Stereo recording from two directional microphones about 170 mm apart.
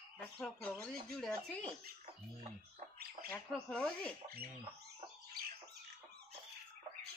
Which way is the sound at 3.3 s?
5° left (ahead or behind).